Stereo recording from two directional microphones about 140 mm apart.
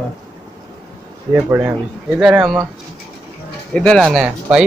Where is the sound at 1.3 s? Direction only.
15° right (ahead or behind).